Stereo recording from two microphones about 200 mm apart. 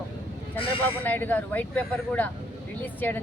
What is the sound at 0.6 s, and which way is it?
Speech, 25° left (ahead or behind).